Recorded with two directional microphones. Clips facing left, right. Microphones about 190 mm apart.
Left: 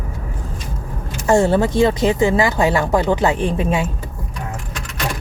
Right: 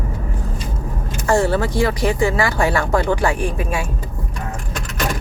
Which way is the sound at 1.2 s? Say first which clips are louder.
Left 3 dB; 20° left (ahead or behind).